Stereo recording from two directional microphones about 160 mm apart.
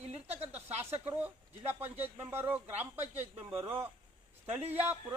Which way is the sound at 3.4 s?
35° right (ahead or behind).